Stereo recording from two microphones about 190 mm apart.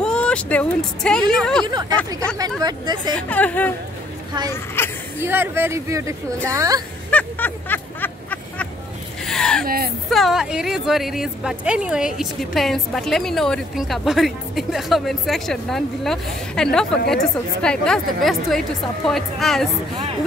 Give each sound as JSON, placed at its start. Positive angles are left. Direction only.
{"t": 0.0, "sound": "a woman's voice", "side_deg": 5}
{"t": 1.7, "sound": "speech", "side_deg": -20}
{"t": 3.2, "sound": "speech", "side_deg": 5}
{"t": 5.2, "sound": "speech", "side_deg": -10}
{"t": 7.1, "sound": "a sound", "side_deg": 10}
{"t": 9.2, "sound": "gasp", "side_deg": 5}
{"t": 9.7, "sound": "speech", "side_deg": -50}
{"t": 10.0, "sound": "a woman's voice", "side_deg": 0}